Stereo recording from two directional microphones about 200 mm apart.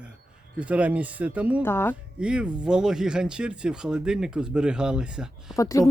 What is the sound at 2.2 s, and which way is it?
Speech, 5° right (ahead or behind).